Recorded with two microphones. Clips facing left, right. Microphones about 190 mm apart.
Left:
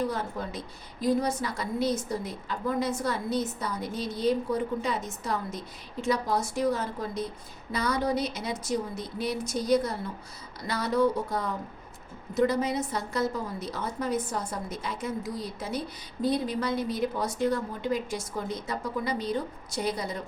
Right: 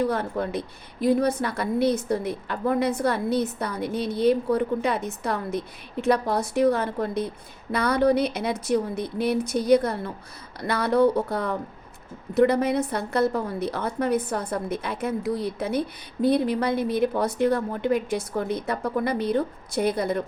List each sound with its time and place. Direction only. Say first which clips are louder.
0.1 s a woman's voice: right 7 dB; 60° right (ahead or behind)